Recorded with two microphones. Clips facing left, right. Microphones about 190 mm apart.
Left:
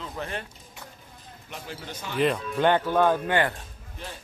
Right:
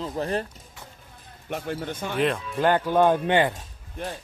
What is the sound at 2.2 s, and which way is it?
Speech, centre (ahead or behind).